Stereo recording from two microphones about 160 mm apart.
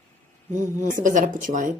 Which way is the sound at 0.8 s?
55° right (ahead or behind).